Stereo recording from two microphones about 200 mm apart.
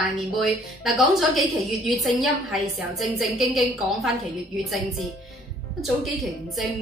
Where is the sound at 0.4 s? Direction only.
Centre (ahead or behind).